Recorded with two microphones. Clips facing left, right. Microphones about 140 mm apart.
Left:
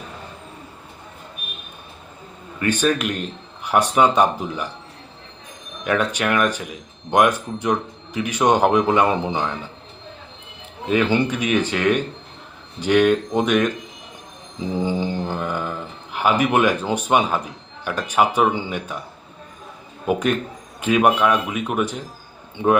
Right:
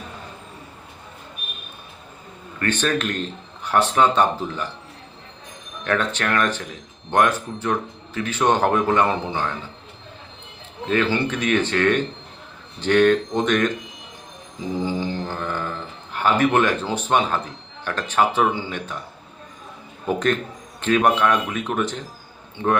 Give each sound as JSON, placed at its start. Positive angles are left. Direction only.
{"t": 2.6, "sound": "speech", "side_deg": 10}
{"t": 5.8, "sound": "speech", "side_deg": 10}
{"t": 10.8, "sound": "speech", "side_deg": 10}
{"t": 14.8, "sound": "mantra", "side_deg": 15}
{"t": 16.1, "sound": "speech", "side_deg": 10}
{"t": 20.1, "sound": "speech", "side_deg": 10}